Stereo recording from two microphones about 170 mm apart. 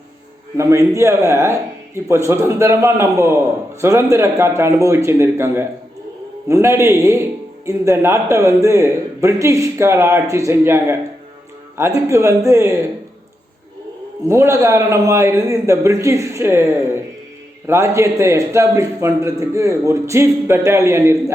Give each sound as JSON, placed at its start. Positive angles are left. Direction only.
{"t": 0.5, "sound": "a man's voice", "side_deg": -15}
{"t": 14.3, "sound": "a man's voice", "side_deg": -15}